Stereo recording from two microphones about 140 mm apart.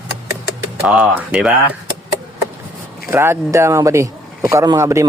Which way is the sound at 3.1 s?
20° right (ahead or behind).